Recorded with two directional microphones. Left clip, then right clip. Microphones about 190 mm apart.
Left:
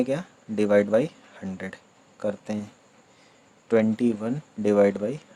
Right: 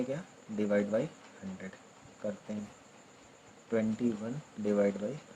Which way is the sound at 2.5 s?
50° left (ahead or behind).